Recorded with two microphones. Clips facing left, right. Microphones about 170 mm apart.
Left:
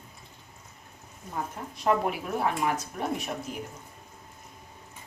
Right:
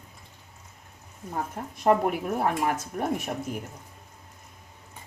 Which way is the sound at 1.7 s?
50° right (ahead or behind).